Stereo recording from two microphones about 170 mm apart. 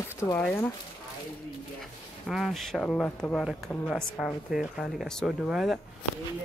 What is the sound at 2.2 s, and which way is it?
Speech, centre (ahead or behind).